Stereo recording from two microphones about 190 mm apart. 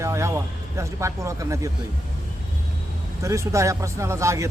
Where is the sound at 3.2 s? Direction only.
15° right (ahead or behind).